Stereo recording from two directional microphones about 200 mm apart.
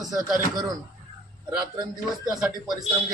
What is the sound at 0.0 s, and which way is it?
Speech, 20° right (ahead or behind).